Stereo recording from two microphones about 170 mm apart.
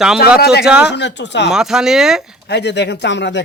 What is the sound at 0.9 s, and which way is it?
Speech, 90° left.